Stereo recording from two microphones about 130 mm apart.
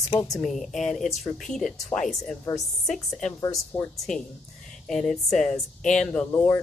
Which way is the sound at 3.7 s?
45° left (ahead or behind).